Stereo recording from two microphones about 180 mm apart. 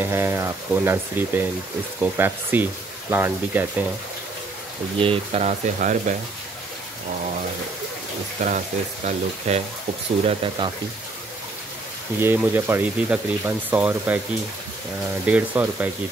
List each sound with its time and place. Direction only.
0.0 s speech: 15° right (ahead or behind)
4.9 s speech: 30° right (ahead or behind)
8.4 s speech: 45° right (ahead or behind)
10.2 s speech: 30° right (ahead or behind)
12.2 s speech: 10° right (ahead or behind)
15.2 s speech: 10° right (ahead or behind)